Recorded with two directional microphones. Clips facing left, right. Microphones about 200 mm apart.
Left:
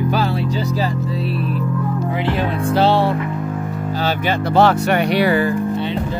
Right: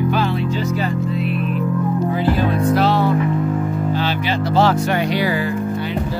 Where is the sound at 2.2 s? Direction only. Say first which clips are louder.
Right 2 dB; 25° left (ahead or behind).